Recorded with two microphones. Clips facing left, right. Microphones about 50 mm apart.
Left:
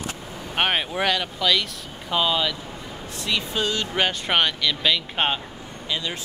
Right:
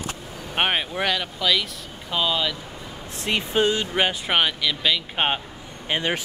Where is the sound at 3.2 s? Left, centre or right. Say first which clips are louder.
Right 4 dB; right.